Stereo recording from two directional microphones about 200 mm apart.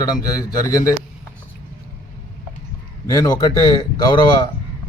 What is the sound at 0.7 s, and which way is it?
Speech, 15° left (ahead or behind).